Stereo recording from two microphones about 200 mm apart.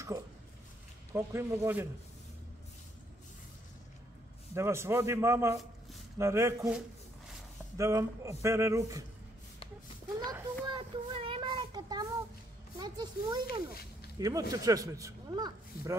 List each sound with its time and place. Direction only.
1.1 s a man's voice: 15° right (ahead or behind)
4.6 s a man's voice: 15° right (ahead or behind)
10.1 s a sound: 20° right (ahead or behind)
10.6 s child singing: 25° right (ahead or behind)
12.7 s a sound: 20° right (ahead or behind)
14.1 s a man's voice: 20° right (ahead or behind)